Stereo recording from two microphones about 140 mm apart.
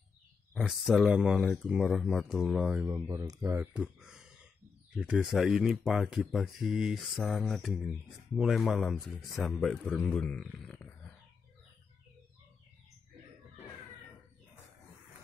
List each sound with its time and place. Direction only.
0.6 s speech: 5° right (ahead or behind)
2.8 s speech: 20° right (ahead or behind)
3.7 s a sound: 5° right (ahead or behind)
4.9 s a man's voice: 5° right (ahead or behind)